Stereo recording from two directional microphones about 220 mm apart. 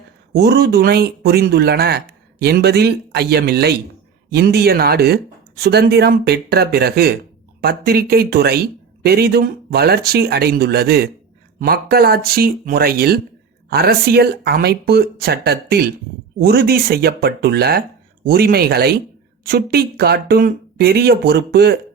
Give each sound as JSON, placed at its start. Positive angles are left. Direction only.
{"t": 0.3, "sound": "speech", "side_deg": -45}